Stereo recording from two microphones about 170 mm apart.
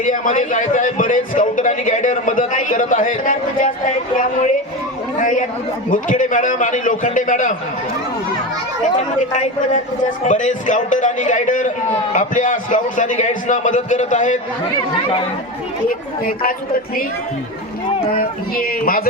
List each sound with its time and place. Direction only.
0.0 s a man's voice: 50° left (ahead or behind)
9.0 s a man's voice: 45° left (ahead or behind)
16.2 s speech: 55° left (ahead or behind)
18.2 s speech: 60° left (ahead or behind)